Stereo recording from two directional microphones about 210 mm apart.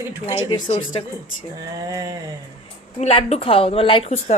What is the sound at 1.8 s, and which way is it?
Speech, 15° right (ahead or behind).